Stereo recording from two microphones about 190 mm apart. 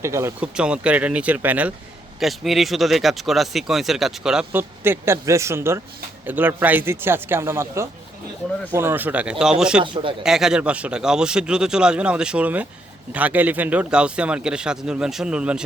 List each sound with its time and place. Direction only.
0.0 s speech: 15° right (ahead or behind)
9.8 s speech: 25° right (ahead or behind)
10.2 s speech: 5° right (ahead or behind)